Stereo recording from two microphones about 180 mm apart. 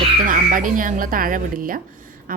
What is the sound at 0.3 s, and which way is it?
A woman's voice, 45° right (ahead or behind).